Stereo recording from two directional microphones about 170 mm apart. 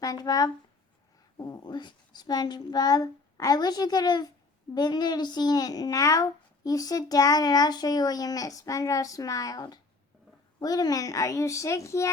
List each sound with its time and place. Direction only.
0.0 s speech: 20° left (ahead or behind)